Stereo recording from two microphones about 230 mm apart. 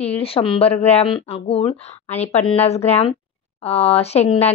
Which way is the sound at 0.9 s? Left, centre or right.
Left.